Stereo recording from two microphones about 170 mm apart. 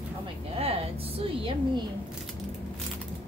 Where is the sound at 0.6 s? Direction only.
35° right (ahead or behind).